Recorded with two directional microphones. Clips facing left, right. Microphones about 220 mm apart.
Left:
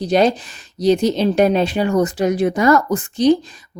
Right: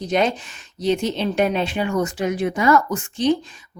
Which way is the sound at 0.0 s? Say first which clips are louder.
Left 5 dB; 35° left (ahead or behind).